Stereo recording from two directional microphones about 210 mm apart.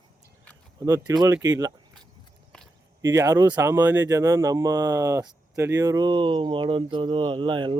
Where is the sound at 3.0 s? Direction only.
15° right (ahead or behind).